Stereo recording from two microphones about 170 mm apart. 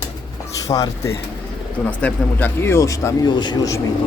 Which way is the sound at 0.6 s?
20° left (ahead or behind).